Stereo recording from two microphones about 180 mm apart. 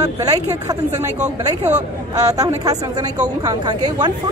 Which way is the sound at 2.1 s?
20° right (ahead or behind).